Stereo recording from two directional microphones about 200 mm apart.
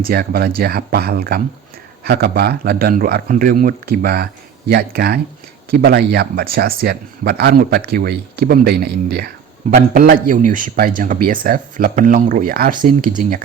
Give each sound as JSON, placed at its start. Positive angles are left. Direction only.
{"t": 0.0, "sound": "speech", "side_deg": -50}